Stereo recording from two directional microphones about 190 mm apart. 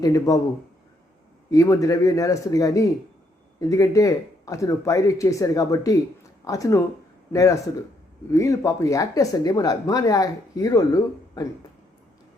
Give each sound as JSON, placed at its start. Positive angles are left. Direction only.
{"t": 0.0, "sound": "speech", "side_deg": 20}
{"t": 1.5, "sound": "speech", "side_deg": 15}
{"t": 8.3, "sound": "speech", "side_deg": 15}